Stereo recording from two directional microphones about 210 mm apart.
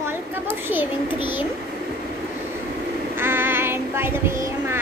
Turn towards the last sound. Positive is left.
turn(degrees=-10)  # may be behind; listen again after turning